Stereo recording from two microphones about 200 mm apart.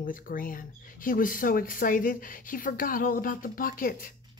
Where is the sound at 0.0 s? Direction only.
45° left (ahead or behind).